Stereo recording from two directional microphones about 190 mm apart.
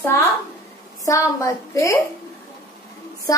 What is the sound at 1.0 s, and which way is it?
Speech, 15° left (ahead or behind).